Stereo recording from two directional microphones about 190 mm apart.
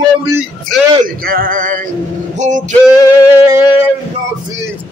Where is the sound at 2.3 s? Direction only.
40° right (ahead or behind).